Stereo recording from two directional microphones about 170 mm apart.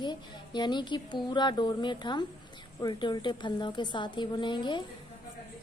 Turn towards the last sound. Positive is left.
turn(degrees=25)  # may be behind; listen again after turning